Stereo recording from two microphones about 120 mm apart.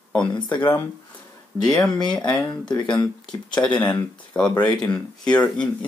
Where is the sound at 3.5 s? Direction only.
10° left (ahead or behind).